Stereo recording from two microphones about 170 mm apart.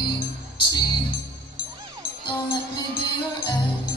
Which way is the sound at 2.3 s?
30° left (ahead or behind).